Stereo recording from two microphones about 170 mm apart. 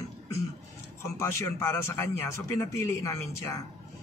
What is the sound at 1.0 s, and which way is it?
A man's voice, 15° left (ahead or behind).